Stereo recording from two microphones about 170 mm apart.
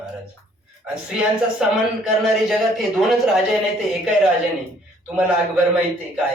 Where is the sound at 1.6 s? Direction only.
5° right (ahead or behind).